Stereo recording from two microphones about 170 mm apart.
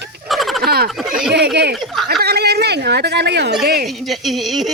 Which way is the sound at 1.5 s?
75° right (ahead or behind).